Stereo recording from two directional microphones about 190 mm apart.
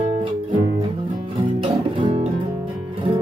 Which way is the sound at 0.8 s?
25° right (ahead or behind).